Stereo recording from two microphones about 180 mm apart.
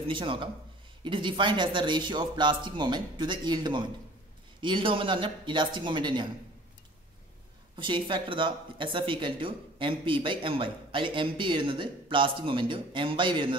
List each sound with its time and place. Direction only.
0.1 s speech: 25° right (ahead or behind)
7.7 s speech: 25° right (ahead or behind)